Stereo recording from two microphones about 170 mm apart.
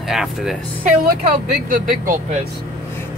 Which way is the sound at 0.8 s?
60° right (ahead or behind).